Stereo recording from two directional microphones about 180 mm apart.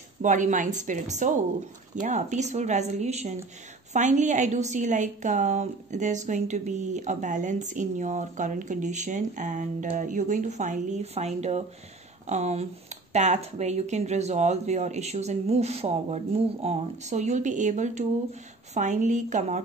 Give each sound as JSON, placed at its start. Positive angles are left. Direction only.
{"t": 0.2, "sound": "a woman's voice", "side_deg": -45}